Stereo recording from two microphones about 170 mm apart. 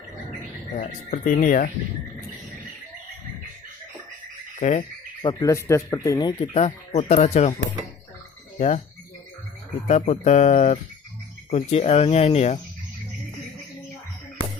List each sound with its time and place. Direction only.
0.7 s speech: 50° left (ahead or behind)
4.6 s cricket: 50° left (ahead or behind)
5.2 s speech: 25° left (ahead or behind)
6.4 s speech: 40° left (ahead or behind)
8.5 s speech: 40° left (ahead or behind)
9.8 s speech: 40° left (ahead or behind)